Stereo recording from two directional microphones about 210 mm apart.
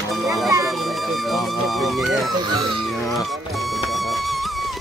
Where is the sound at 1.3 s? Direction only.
Centre (ahead or behind).